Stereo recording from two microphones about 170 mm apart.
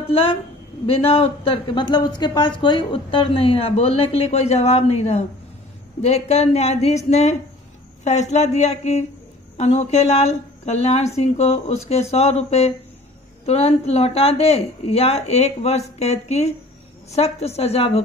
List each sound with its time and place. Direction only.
0.1 s speech: 30° left (ahead or behind)